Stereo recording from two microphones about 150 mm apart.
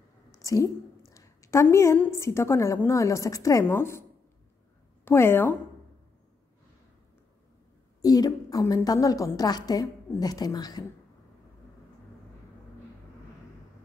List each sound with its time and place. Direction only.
0.4 s a sound: 20° left (ahead or behind)
2.0 s a woman's voice: 20° left (ahead or behind)
5.0 s a woman's voice: 15° left (ahead or behind)
8.0 s a woman's voice: 25° left (ahead or behind)